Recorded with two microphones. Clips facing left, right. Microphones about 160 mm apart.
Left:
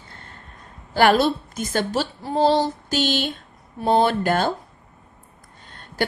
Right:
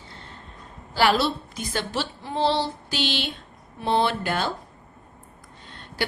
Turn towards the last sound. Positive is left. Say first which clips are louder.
# left 4 dB
turn(degrees=45)  # may be behind; listen again after turning